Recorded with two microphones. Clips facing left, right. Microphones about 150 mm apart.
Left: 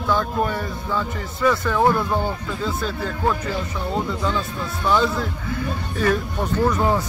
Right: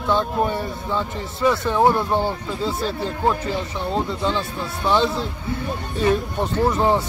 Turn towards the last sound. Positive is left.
turn(degrees=-25)  # may be behind; listen again after turning